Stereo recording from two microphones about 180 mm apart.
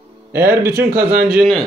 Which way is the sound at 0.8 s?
60° right (ahead or behind).